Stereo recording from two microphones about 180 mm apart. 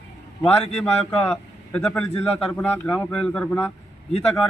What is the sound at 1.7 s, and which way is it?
A man's voice, 5° left (ahead or behind).